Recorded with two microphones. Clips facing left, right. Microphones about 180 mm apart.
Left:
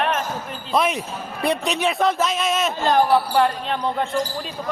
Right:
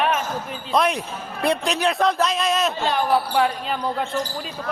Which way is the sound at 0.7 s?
Centre (ahead or behind).